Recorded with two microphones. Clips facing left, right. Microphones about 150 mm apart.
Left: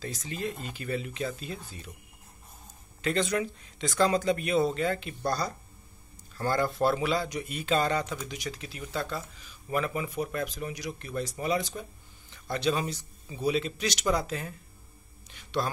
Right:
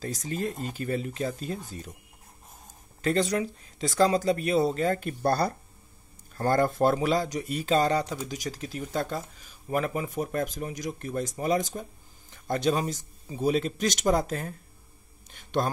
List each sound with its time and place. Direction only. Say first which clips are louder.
0.0 s speech: right 3 dB; 40° right (ahead or behind)
3.0 s speech: right 2 dB; 40° right (ahead or behind)
15.3 s music: right 3 dB; 45° right (ahead or behind)